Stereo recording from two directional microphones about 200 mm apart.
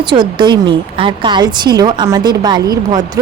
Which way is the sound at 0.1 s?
25° right (ahead or behind).